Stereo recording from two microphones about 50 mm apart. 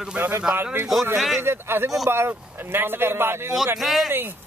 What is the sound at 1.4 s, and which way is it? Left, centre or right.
Speech, right.